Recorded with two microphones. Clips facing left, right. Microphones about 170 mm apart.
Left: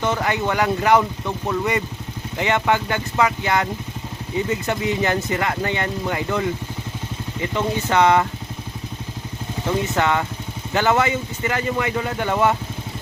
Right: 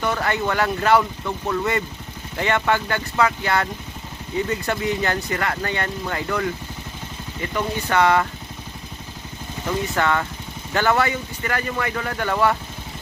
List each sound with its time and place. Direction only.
0.0 s speech: 20° left (ahead or behind)
9.6 s speech: 15° left (ahead or behind)